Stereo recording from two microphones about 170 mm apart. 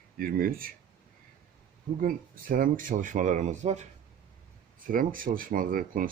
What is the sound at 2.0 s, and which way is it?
Speech, 55° right (ahead or behind).